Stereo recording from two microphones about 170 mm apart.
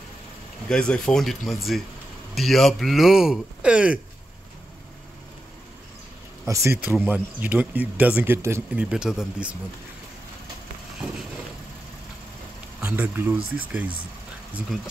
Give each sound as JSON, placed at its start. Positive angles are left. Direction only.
{"t": 0.7, "sound": "speech", "side_deg": 5}
{"t": 6.4, "sound": "speech", "side_deg": -15}
{"t": 12.8, "sound": "speech", "side_deg": -10}